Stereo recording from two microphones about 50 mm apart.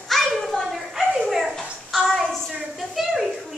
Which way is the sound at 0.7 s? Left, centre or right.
Centre.